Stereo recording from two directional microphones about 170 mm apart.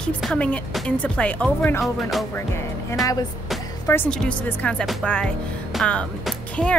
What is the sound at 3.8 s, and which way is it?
Speech, 15° left (ahead or behind).